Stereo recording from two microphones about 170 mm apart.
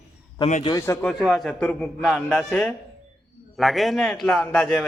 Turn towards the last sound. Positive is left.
turn(degrees=5)  # may be behind; listen again after turning